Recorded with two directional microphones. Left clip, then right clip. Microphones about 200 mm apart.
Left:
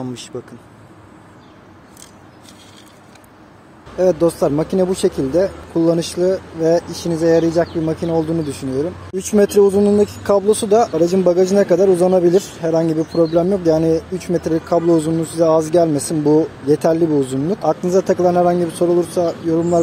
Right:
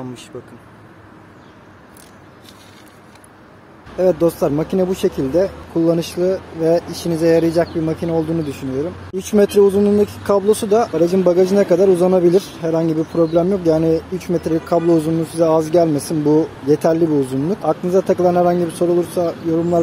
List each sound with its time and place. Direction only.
0.0 s speech: 25° left (ahead or behind)
3.9 s speech: centre (ahead or behind)